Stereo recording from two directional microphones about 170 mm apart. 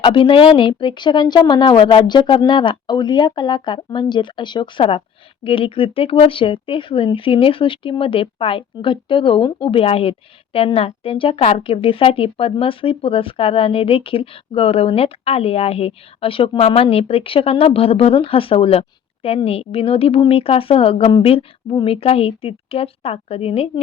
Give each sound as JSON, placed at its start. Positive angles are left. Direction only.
{"t": 0.0, "sound": "speech", "side_deg": 30}